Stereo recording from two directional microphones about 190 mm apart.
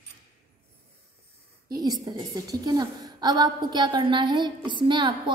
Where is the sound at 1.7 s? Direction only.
20° right (ahead or behind).